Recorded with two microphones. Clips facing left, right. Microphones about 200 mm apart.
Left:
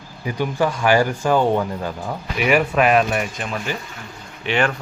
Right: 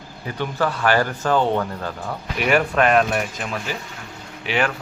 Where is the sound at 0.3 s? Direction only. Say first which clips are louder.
Left 3 dB; 10° left (ahead or behind).